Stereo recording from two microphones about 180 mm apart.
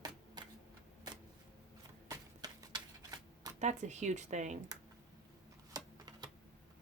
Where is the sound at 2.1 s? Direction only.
20° right (ahead or behind).